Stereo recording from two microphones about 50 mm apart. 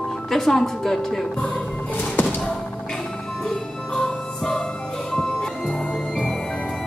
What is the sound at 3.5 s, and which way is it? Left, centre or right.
Music, centre.